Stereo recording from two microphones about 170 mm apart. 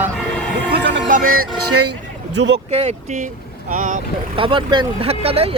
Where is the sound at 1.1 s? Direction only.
55° right (ahead or behind).